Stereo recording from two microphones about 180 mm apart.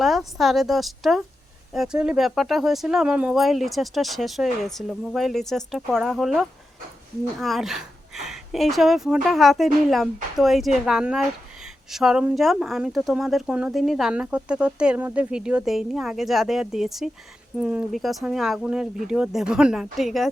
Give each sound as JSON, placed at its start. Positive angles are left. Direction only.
{"t": 0.0, "sound": "speech", "side_deg": 0}